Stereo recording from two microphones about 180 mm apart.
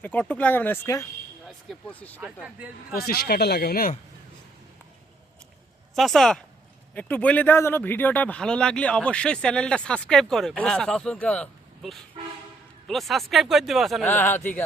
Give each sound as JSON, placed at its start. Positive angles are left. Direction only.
{"t": 0.0, "sound": "speech", "side_deg": 10}
{"t": 2.2, "sound": "speech", "side_deg": -5}
{"t": 2.9, "sound": "speech", "side_deg": 60}
{"t": 5.9, "sound": "speech", "side_deg": 0}
{"t": 14.1, "sound": "speech", "side_deg": 10}